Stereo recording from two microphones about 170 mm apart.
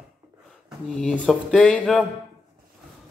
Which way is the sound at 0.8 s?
5° left (ahead or behind).